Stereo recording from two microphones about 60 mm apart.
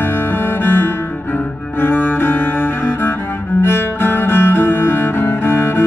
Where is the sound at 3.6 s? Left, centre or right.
Left.